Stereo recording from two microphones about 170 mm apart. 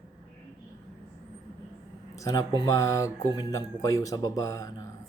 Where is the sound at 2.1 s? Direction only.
20° left (ahead or behind).